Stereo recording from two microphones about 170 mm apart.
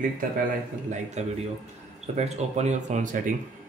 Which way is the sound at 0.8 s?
45° right (ahead or behind).